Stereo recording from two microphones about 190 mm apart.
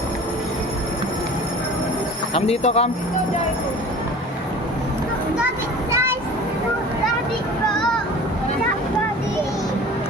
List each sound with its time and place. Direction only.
2.3 s speech: 35° left (ahead or behind)
5.9 s children playing: 15° right (ahead or behind)